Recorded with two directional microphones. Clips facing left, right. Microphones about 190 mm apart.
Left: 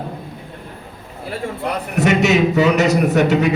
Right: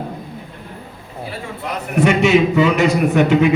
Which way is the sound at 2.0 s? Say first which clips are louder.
Right 2 dB; 40° left (ahead or behind).